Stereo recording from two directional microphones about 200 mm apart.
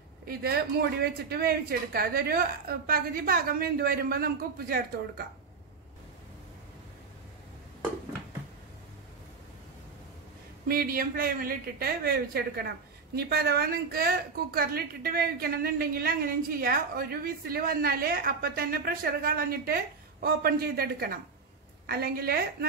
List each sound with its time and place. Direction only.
0.3 s a woman's voice: 50° right (ahead or behind)
10.7 s a woman's voice: 45° right (ahead or behind)